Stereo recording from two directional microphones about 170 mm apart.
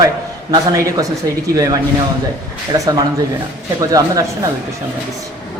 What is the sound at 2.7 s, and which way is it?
A man's voice, 20° right (ahead or behind).